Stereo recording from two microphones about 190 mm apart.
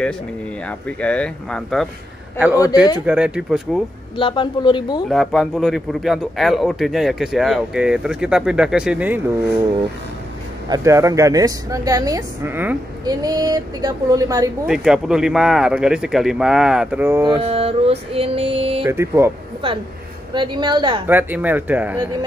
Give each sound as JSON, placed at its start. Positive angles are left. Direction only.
{"t": 0.7, "sound": "a man's voice", "side_deg": 5}
{"t": 2.3, "sound": "a woman's voice", "side_deg": -10}
{"t": 2.6, "sound": "speech", "side_deg": 20}
{"t": 3.1, "sound": "a man's voice", "side_deg": -5}
{"t": 4.2, "sound": "speech", "side_deg": 25}
{"t": 5.1, "sound": "a man's voice", "side_deg": 0}
{"t": 10.7, "sound": "a woman's voice", "side_deg": -15}
{"t": 14.7, "sound": "a man's voice", "side_deg": -5}
{"t": 17.4, "sound": "mantra", "side_deg": -30}
{"t": 18.9, "sound": "a woman's voice", "side_deg": -15}
{"t": 20.3, "sound": "speech", "side_deg": -25}
{"t": 21.1, "sound": "a woman's voice", "side_deg": -10}